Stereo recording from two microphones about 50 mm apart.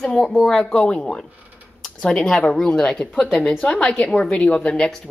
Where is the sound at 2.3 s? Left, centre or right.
Centre.